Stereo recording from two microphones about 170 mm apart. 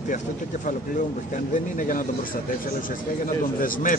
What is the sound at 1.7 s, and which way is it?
Speech, 50° left (ahead or behind).